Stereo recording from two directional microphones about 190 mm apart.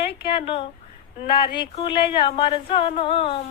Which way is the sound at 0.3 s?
30° left (ahead or behind).